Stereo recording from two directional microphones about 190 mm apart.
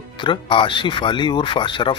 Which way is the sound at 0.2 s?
25° left (ahead or behind).